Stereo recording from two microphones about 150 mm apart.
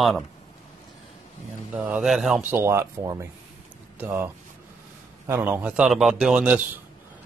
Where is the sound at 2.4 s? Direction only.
15° right (ahead or behind).